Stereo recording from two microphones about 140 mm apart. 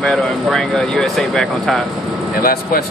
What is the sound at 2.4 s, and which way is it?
Speech, 90° left.